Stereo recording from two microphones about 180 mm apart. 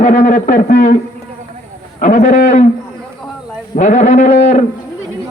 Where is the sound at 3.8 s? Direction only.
40° left (ahead or behind).